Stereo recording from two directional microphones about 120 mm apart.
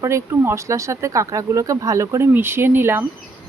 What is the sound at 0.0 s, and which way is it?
Speech, 25° right (ahead or behind).